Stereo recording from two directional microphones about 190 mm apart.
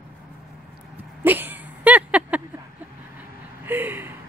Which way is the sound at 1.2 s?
10° right (ahead or behind).